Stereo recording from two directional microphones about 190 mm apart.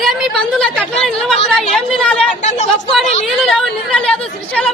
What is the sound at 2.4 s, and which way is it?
Speech, 40° left (ahead or behind).